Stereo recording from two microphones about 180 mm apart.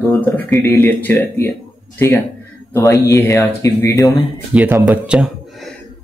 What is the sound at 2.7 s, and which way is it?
Speech, 15° left (ahead or behind).